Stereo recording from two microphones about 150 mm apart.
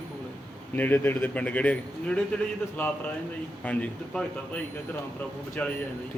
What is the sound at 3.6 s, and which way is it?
Speech, 10° left (ahead or behind).